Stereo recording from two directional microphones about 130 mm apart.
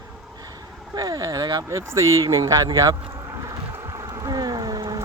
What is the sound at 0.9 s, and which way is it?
Speech, 30° right (ahead or behind).